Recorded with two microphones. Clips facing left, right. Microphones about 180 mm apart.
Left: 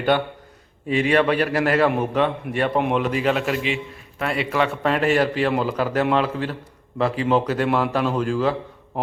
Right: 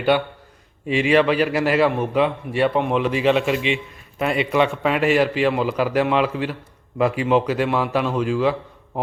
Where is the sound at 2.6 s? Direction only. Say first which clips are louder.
Right 1 dB; 5° left (ahead or behind).